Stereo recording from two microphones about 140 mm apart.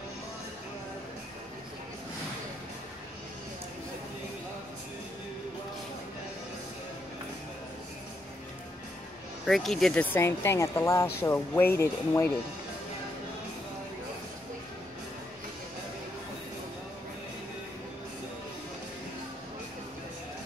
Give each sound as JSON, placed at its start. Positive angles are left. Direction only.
{"t": 9.5, "sound": "speech", "side_deg": 0}
{"t": 10.1, "sound": "speech", "side_deg": 15}